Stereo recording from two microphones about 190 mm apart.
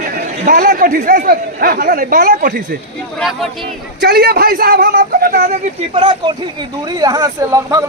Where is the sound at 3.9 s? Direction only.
55° right (ahead or behind).